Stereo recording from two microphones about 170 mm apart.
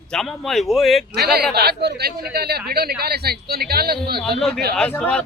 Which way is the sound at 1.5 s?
70° right (ahead or behind).